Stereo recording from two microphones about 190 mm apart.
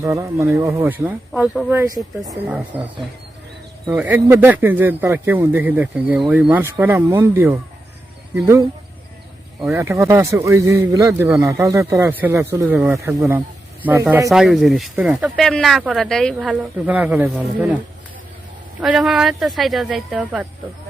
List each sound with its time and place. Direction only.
0.0 s speech: 15° right (ahead or behind)
9.7 s speech: 15° right (ahead or behind)
14.3 s speech: centre (ahead or behind)
18.8 s speech: centre (ahead or behind)